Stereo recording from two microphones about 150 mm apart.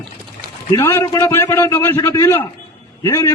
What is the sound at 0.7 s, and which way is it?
A man's voice, 15° left (ahead or behind).